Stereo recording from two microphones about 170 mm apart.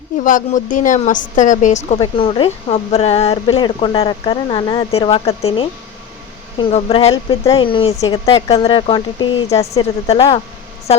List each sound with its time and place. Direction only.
0.3 s a woman's voice: 50° left (ahead or behind); by 10.4 s 30° left (ahead or behind)